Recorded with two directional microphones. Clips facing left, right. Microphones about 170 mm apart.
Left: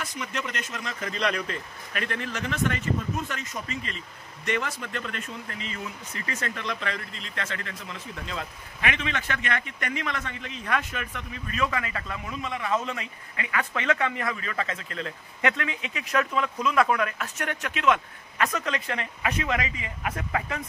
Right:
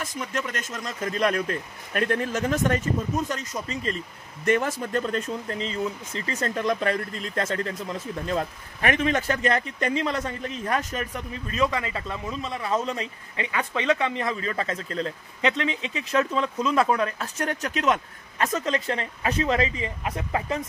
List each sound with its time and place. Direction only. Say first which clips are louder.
0.0 s a man's voice: right 3 dB; 45° right (ahead or behind); by 6.5 s 30° right (ahead or behind)
6.5 s a man's voice: right 8 dB; 45° right (ahead or behind)
15.4 s speech: right 3 dB; 25° right (ahead or behind)